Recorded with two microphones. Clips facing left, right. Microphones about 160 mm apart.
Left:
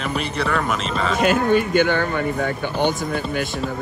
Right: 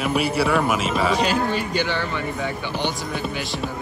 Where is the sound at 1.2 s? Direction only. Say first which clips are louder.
Left 5 dB; 55° left (ahead or behind).